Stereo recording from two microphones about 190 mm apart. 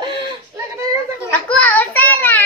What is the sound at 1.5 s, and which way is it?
Child singing, 10° left (ahead or behind).